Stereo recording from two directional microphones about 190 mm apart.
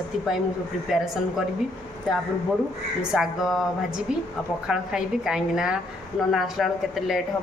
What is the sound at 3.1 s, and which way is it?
A woman's voice, 5° right (ahead or behind).